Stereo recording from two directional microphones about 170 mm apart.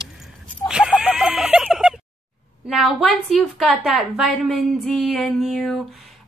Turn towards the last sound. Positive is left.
turn(degrees=0)  # may be behind; listen again after turning